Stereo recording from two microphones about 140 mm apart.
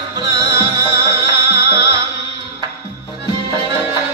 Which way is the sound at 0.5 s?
20° right (ahead or behind).